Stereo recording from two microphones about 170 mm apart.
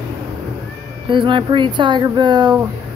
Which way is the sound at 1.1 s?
30° right (ahead or behind).